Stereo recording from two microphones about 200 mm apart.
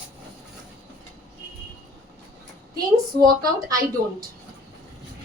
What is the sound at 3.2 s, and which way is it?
Speech, 20° right (ahead or behind).